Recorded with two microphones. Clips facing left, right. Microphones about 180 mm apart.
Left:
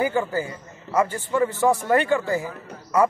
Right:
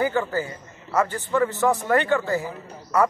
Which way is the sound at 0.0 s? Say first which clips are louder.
Even; 15° left (ahead or behind).